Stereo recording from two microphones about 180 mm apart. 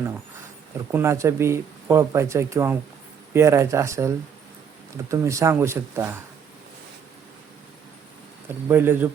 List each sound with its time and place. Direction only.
0.9 s speech: 15° right (ahead or behind)
8.6 s speech: 15° right (ahead or behind)